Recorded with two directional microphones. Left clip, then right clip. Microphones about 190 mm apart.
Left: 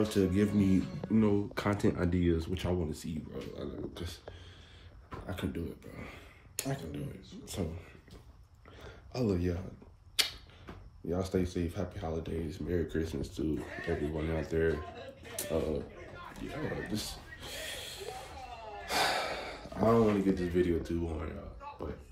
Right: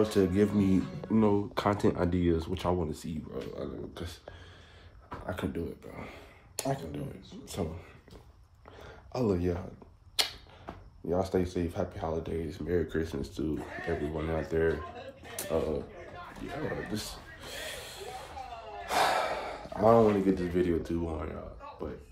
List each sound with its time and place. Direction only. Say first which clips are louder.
0.0 s speech: right 4 dB; 10° left (ahead or behind)
8.8 s a sound: right 3 dB; 10° left (ahead or behind)
10.1 s speech: right 1 dB; 10° left (ahead or behind)